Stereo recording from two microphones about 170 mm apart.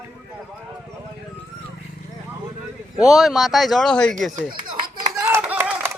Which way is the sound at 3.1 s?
Centre (ahead or behind).